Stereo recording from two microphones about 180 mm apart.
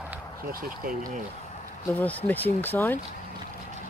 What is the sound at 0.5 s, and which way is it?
Speech, 50° right (ahead or behind).